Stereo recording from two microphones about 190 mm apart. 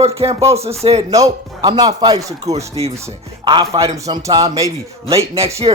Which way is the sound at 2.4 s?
35° right (ahead or behind).